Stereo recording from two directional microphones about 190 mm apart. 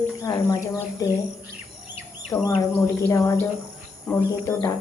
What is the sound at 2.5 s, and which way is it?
Speech, 15° left (ahead or behind).